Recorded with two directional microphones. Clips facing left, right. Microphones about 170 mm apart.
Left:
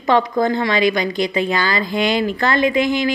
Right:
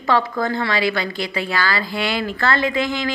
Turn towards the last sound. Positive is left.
turn(degrees=15)  # may be behind; listen again after turning